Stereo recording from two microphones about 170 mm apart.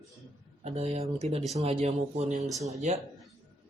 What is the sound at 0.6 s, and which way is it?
Speech, 40° right (ahead or behind).